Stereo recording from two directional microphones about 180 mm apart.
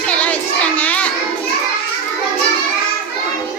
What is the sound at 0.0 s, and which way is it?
Child singing, 10° left (ahead or behind).